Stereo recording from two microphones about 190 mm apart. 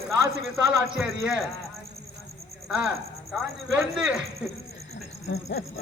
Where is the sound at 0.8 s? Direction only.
5° right (ahead or behind).